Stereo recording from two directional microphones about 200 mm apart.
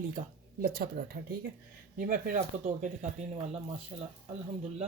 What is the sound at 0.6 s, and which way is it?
Speech, 50° right (ahead or behind).